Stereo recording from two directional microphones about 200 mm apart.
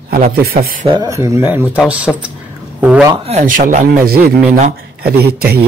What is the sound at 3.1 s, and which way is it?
Speech, 30° right (ahead or behind).